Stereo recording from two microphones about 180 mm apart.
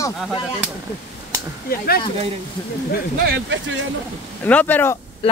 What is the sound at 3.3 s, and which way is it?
Speech, 90° right.